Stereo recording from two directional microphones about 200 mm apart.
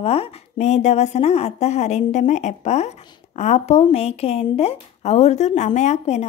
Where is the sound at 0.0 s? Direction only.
30° left (ahead or behind).